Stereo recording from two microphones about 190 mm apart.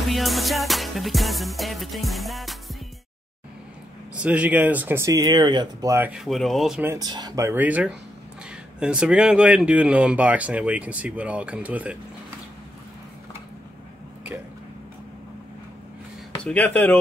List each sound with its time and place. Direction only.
0.1 s music: centre (ahead or behind)
4.1 s speech: 5° right (ahead or behind)
6.8 s speech: 15° right (ahead or behind)
16.3 s speech: 5° left (ahead or behind)